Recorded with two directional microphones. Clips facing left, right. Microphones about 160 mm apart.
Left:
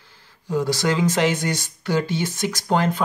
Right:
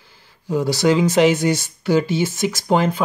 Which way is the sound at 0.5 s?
5° right (ahead or behind).